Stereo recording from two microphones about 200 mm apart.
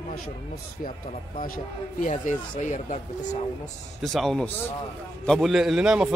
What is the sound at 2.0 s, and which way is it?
Speech, 40° left (ahead or behind).